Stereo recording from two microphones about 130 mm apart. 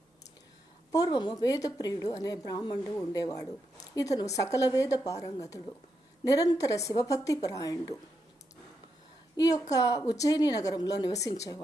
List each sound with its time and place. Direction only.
0.9 s a woman's voice: 30° left (ahead or behind)
9.3 s a woman's voice: 25° left (ahead or behind)